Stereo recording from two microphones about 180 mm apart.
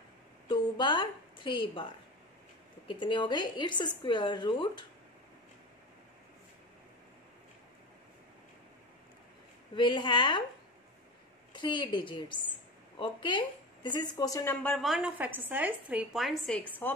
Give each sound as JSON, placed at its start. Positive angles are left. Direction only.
{"t": 0.5, "sound": "a sound", "side_deg": 25}
{"t": 2.9, "sound": "a woman's voice", "side_deg": 25}
{"t": 9.8, "sound": "a woman's voice", "side_deg": 25}
{"t": 11.5, "sound": "a woman's voice", "side_deg": 25}